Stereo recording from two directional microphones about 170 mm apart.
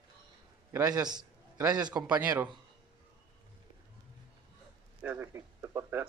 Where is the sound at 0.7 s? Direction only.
20° right (ahead or behind).